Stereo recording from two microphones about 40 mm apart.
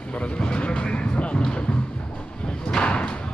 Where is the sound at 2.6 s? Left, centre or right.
Left.